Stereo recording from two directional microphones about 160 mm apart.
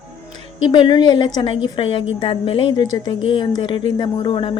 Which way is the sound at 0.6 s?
30° left (ahead or behind).